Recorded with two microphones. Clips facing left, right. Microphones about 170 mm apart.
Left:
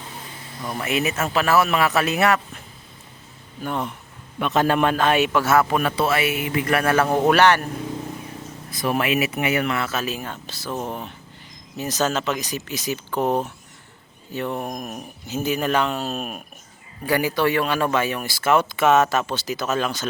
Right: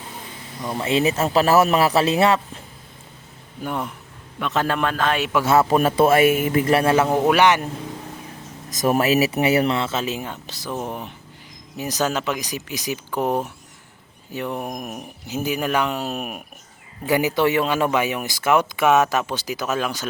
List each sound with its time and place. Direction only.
0.6 s a man's voice: 20° right (ahead or behind)
3.6 s speech: 10° right (ahead or behind)
4.4 s a man's voice: 15° left (ahead or behind)
5.5 s a man's voice: 30° right (ahead or behind)
6.7 s speech: 30° right (ahead or behind)
6.9 s speech: 15° right (ahead or behind)
8.7 s speech: 40° right (ahead or behind); by 20.1 s 10° right (ahead or behind)